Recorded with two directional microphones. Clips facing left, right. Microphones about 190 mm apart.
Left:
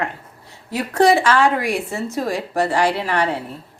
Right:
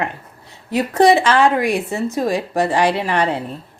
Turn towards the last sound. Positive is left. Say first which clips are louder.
# right 2 dB
turn(degrees=-20)  # may be behind; listen again after turning